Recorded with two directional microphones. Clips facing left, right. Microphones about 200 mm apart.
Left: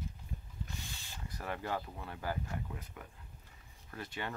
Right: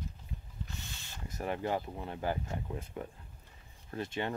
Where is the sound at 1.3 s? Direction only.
20° right (ahead or behind).